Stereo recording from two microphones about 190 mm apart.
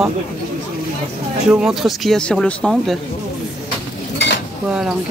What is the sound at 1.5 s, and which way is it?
Speech, 5° right (ahead or behind).